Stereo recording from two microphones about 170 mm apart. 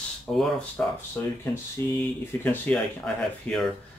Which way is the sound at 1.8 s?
25° right (ahead or behind).